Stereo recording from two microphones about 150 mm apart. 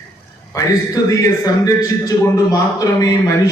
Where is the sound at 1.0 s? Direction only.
25° left (ahead or behind).